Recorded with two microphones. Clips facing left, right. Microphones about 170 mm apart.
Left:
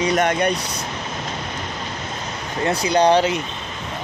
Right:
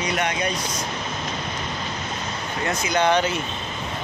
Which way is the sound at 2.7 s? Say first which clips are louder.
Left 5 dB; 35° left (ahead or behind).